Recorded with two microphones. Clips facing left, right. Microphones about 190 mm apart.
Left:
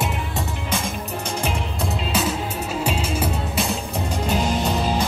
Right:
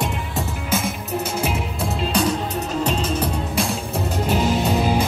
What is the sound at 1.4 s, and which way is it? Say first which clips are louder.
Music: right 2 dB; centre (ahead or behind).